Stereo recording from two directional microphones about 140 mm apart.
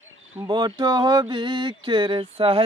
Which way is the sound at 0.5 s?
30° right (ahead or behind).